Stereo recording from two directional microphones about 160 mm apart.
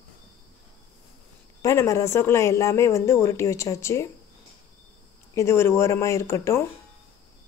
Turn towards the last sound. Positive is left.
turn(degrees=15)  # may be behind; listen again after turning